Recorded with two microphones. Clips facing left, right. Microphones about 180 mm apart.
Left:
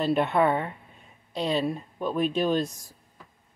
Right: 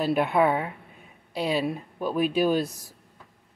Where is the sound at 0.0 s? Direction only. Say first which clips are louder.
Right 1 dB; centre (ahead or behind).